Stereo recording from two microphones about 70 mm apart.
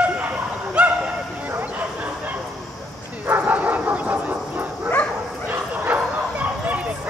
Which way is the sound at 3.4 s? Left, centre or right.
Right.